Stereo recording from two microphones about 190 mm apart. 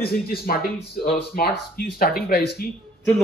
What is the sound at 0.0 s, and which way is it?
Speech, 50° left (ahead or behind).